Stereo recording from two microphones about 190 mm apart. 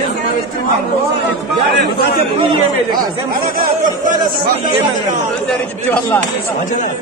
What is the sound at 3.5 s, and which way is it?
Speech, 45° right (ahead or behind).